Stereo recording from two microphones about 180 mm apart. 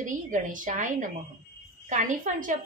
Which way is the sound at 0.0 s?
45° right (ahead or behind).